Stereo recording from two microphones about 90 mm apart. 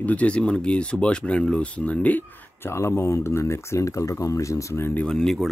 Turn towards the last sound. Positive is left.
turn(degrees=5)  # may be behind; listen again after turning